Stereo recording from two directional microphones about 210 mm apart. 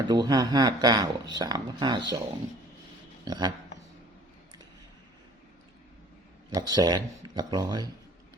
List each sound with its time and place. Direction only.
0.0 s speech: 20° right (ahead or behind)
3.2 s speech: 20° right (ahead or behind)
6.5 s speech: 20° right (ahead or behind)